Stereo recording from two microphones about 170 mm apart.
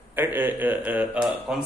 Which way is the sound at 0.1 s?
10° right (ahead or behind).